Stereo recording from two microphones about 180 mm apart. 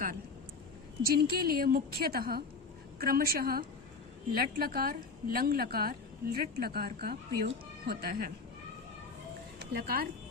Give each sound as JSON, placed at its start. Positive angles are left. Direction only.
{"t": 1.0, "sound": "a woman's voice", "side_deg": -55}
{"t": 9.6, "sound": "speech", "side_deg": -60}